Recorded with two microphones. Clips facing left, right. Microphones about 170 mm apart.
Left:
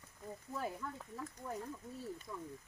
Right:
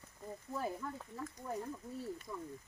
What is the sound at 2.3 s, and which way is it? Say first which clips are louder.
Speech: right 2 dB; 5° right (ahead or behind).